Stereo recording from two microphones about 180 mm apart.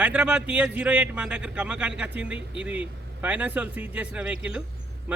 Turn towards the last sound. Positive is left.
turn(degrees=-10)  # may be behind; listen again after turning